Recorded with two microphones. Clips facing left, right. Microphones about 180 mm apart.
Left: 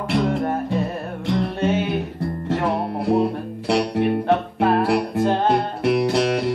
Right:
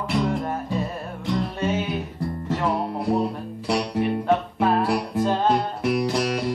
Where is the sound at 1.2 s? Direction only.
60° left (ahead or behind).